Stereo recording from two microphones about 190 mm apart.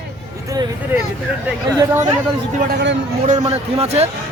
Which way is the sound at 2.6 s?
60° right (ahead or behind).